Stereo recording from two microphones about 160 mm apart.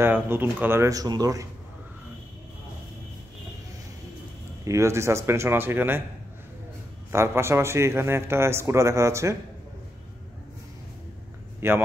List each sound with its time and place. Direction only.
0.0 s speech: 15° right (ahead or behind)
4.6 s speech: 15° right (ahead or behind)
7.1 s speech: 15° right (ahead or behind)
11.6 s speech: 15° right (ahead or behind)